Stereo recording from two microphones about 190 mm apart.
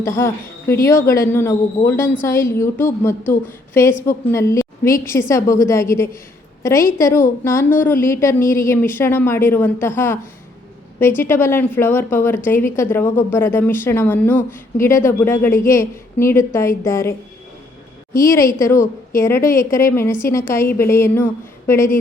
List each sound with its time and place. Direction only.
0.0 s a woman's voice: 15° left (ahead or behind)
11.2 s speech: 15° left (ahead or behind)